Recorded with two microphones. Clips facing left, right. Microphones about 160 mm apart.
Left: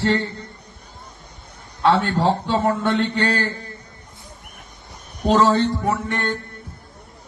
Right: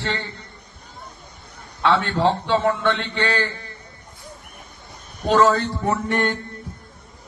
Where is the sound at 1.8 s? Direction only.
40° left (ahead or behind).